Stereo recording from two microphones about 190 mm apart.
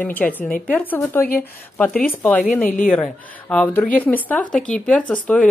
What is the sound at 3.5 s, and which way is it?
Speech, 5° left (ahead or behind).